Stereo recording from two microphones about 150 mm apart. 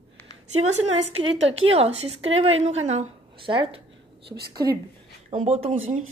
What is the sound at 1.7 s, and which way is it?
A woman's voice, 40° right (ahead or behind).